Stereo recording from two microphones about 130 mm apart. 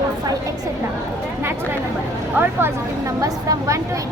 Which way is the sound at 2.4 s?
20° right (ahead or behind).